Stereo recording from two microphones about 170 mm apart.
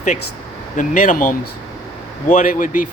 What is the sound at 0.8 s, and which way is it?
Speech, 50° left (ahead or behind).